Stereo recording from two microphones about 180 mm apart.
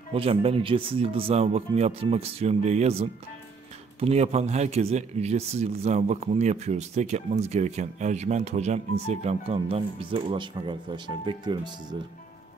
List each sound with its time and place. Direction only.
0.1 s speech: 30° right (ahead or behind)